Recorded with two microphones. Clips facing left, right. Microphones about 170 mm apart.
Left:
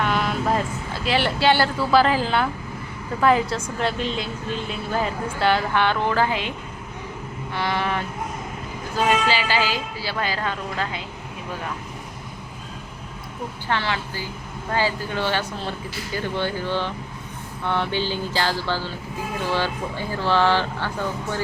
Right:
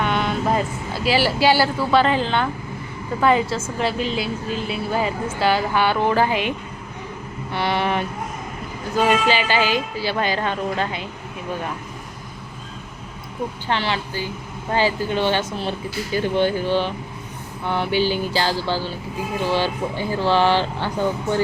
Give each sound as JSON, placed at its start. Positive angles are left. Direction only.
{"t": 0.0, "sound": "vehicle", "side_deg": 0}
{"t": 1.0, "sound": "a woman's voice", "side_deg": -5}
{"t": 7.5, "sound": "speech", "side_deg": -15}
{"t": 9.2, "sound": "a woman's voice", "side_deg": -20}
{"t": 13.7, "sound": "a woman's voice", "side_deg": -20}